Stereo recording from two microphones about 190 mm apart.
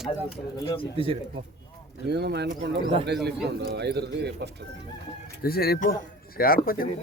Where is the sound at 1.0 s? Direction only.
30° right (ahead or behind).